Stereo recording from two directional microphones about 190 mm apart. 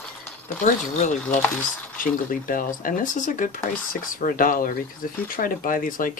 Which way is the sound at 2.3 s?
45° left (ahead or behind).